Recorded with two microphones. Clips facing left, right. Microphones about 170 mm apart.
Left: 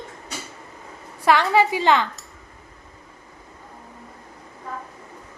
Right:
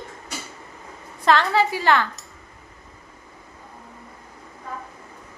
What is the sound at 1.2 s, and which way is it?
Speech, 15° left (ahead or behind).